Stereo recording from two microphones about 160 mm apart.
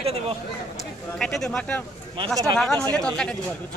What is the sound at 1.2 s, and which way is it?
Speech, 5° left (ahead or behind).